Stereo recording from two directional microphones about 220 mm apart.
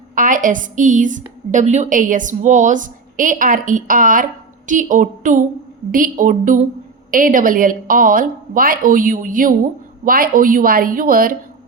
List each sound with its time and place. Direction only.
0.2 s a woman's voice: 35° right (ahead or behind)